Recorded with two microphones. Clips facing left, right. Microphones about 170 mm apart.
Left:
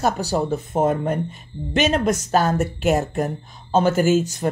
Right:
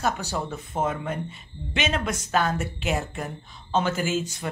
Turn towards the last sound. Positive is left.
turn(degrees=40)  # may be behind; listen again after turning